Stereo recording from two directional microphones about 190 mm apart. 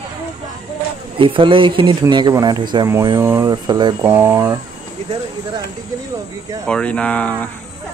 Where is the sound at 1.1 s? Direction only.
25° right (ahead or behind).